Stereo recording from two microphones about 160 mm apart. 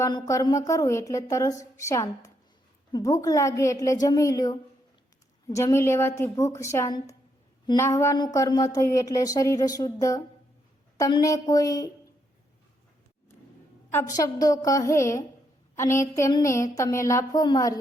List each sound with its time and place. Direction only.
0.0 s speech: 20° left (ahead or behind)
14.3 s speech: 20° left (ahead or behind)